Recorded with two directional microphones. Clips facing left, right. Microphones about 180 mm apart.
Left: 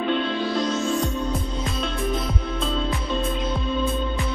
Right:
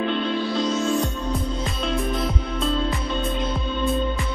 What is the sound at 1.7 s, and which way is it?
Music, centre (ahead or behind).